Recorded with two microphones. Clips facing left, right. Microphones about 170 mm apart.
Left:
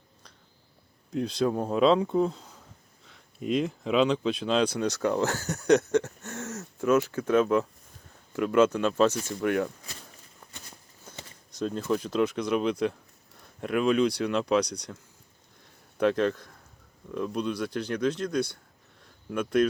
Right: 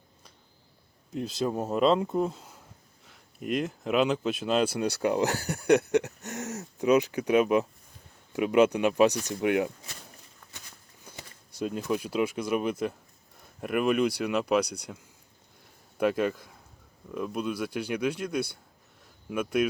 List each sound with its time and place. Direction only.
1.1 s speech: 5° right (ahead or behind)
11.5 s speech: 10° right (ahead or behind)
16.0 s a man's voice: 5° right (ahead or behind)
19.0 s a sound: 5° right (ahead or behind)